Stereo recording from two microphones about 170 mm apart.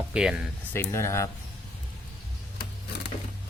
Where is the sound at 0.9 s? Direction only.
15° left (ahead or behind).